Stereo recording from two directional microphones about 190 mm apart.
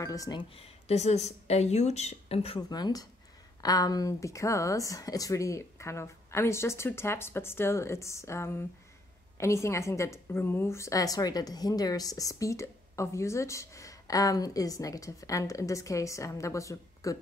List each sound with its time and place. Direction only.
0.0 s a woman's voice: 15° left (ahead or behind)